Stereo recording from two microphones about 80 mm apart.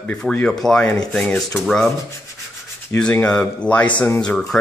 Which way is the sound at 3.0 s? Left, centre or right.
Centre.